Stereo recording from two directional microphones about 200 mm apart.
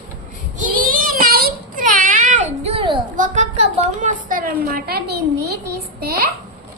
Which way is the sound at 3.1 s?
40° right (ahead or behind).